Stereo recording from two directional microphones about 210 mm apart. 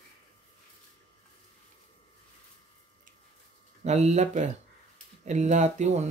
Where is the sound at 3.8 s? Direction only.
35° right (ahead or behind).